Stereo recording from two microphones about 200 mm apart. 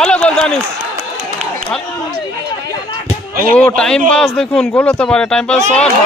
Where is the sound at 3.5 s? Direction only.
5° left (ahead or behind).